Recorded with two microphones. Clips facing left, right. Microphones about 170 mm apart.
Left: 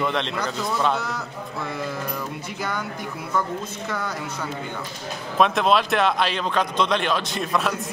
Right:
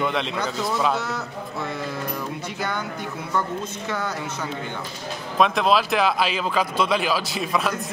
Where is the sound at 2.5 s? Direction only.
10° left (ahead or behind).